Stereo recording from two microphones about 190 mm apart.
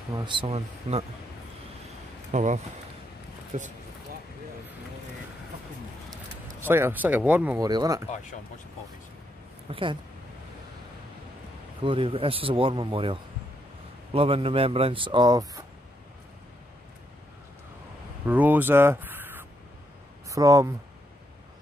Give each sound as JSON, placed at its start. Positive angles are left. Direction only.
{"t": 0.1, "sound": "speech", "side_deg": -25}
{"t": 2.3, "sound": "speech", "side_deg": -40}
{"t": 6.6, "sound": "speech", "side_deg": -10}
{"t": 7.6, "sound": "speech", "side_deg": -20}
{"t": 9.7, "sound": "speech", "side_deg": -25}
{"t": 11.8, "sound": "speech", "side_deg": -25}
{"t": 18.2, "sound": "speech", "side_deg": -10}